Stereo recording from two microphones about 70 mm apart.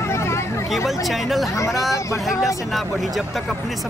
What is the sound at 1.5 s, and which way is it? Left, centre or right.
Speech, left.